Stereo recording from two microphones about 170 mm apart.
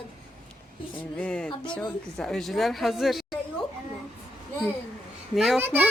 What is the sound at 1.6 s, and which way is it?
Speech, 25° left (ahead or behind).